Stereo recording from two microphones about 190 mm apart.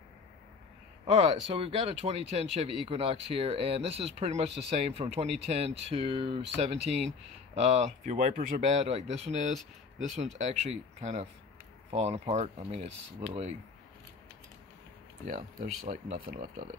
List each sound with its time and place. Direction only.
1.0 s speech: 35° right (ahead or behind)
7.5 s speech: 35° right (ahead or behind)
15.2 s speech: 45° right (ahead or behind)